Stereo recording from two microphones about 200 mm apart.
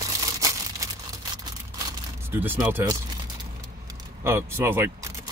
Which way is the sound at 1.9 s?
10° right (ahead or behind).